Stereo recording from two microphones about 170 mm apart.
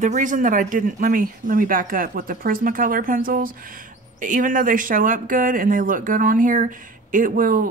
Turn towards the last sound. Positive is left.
turn(degrees=-55)  # may be behind; listen again after turning